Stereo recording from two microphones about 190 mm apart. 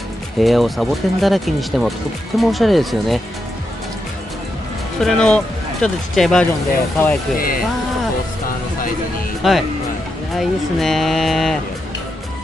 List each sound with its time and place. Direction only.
0.4 s speech: centre (ahead or behind)
5.0 s speech: 5° left (ahead or behind)
7.3 s speech: 50° left (ahead or behind)
9.4 s speech: centre (ahead or behind)